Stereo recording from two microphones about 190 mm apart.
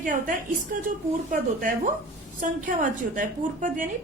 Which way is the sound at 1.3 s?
45° right (ahead or behind).